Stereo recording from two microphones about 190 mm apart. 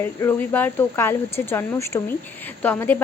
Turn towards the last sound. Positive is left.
turn(degrees=10)  # may be behind; listen again after turning